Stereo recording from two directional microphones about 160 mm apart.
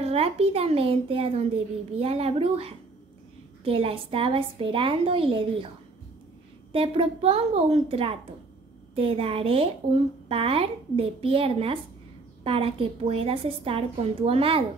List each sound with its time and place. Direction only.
0.0 s a child's voice: 40° right (ahead or behind)
6.7 s a child's voice: 35° right (ahead or behind)